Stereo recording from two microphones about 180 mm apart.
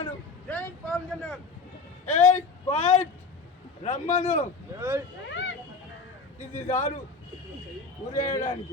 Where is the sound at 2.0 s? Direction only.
40° left (ahead or behind).